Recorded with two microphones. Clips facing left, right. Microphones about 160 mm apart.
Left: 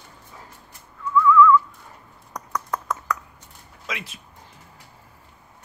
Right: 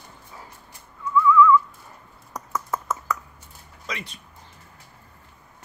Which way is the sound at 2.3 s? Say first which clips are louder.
Even; 5° right (ahead or behind).